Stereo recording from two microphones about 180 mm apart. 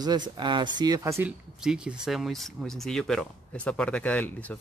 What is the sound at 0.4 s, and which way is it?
Speech, 25° right (ahead or behind).